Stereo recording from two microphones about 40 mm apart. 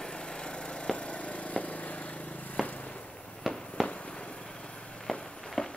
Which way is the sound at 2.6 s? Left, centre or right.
Left.